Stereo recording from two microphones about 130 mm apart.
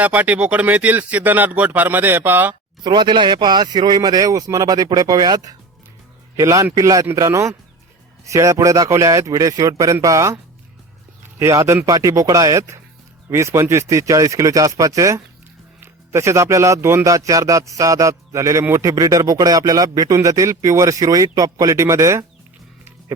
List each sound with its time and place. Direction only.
0.0 s speech: 10° right (ahead or behind)
2.8 s a man's voice: 35° right (ahead or behind)